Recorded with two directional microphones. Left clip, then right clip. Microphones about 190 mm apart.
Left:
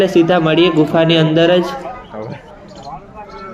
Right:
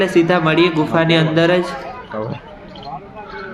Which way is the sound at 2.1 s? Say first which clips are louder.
Right 6 dB; 50° right (ahead or behind).